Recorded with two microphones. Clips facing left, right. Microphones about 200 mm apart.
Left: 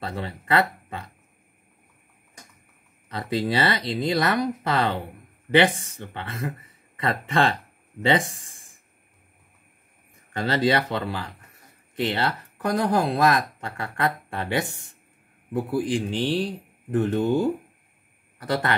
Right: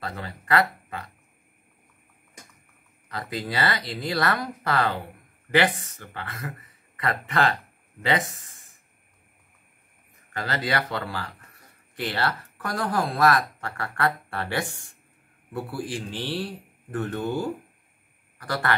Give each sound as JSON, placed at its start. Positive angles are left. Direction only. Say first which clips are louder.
{"t": 0.0, "sound": "speech", "louder": "left 3 dB", "side_deg": 25}
{"t": 3.1, "sound": "speech", "louder": "left 6 dB", "side_deg": 25}
{"t": 10.3, "sound": "speech", "louder": "left 6 dB", "side_deg": 25}
{"t": 18.4, "sound": "speech", "louder": "left 2 dB", "side_deg": 20}